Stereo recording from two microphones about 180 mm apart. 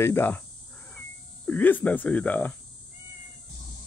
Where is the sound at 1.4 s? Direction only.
10° left (ahead or behind).